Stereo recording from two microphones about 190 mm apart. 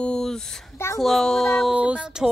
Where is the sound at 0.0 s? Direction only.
5° left (ahead or behind).